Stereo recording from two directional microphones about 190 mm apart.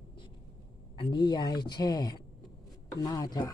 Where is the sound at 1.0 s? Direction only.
25° left (ahead or behind).